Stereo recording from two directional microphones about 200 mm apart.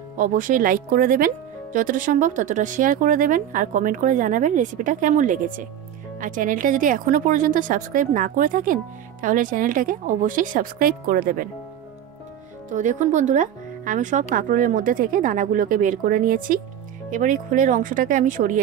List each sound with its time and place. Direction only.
0.2 s speech: 40° right (ahead or behind)
12.6 s speech: 40° right (ahead or behind)